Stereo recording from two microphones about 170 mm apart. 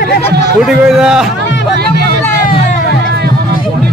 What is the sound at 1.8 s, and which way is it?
Music, 70° right (ahead or behind).